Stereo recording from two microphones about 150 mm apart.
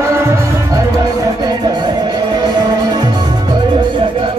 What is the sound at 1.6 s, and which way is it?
Music, 30° right (ahead or behind).